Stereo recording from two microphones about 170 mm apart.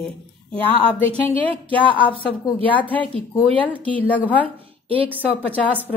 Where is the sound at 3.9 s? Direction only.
10° left (ahead or behind).